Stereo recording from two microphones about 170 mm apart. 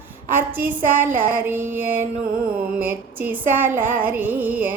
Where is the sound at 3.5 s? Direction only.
10° right (ahead or behind).